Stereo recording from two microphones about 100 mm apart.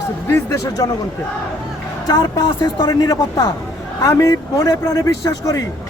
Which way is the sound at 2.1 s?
45° left (ahead or behind).